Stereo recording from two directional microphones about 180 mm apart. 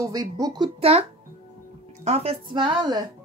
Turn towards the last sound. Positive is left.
turn(degrees=-25)  # may be behind; listen again after turning